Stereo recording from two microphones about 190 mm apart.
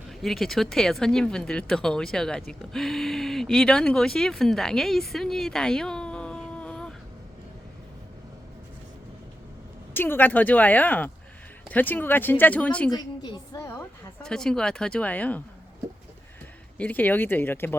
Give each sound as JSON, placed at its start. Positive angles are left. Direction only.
{"t": 0.1, "sound": "speech", "side_deg": 0}
{"t": 9.9, "sound": "a woman's voice", "side_deg": 10}
{"t": 12.9, "sound": "a woman's voice", "side_deg": 20}
{"t": 14.2, "sound": "speech", "side_deg": 5}
{"t": 16.7, "sound": "a woman's voice", "side_deg": 10}